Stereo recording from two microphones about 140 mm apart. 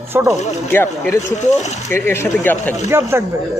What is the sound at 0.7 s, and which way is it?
Speech, 15° left (ahead or behind).